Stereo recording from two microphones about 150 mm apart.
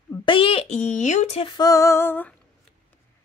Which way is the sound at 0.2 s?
35° left (ahead or behind).